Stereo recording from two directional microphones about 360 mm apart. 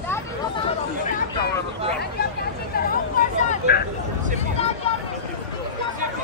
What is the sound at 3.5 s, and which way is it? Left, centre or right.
Vehicle, left.